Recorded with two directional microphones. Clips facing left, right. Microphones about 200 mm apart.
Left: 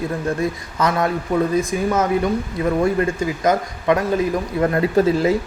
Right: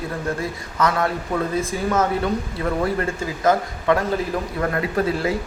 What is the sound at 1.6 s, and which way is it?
Speech, 10° left (ahead or behind).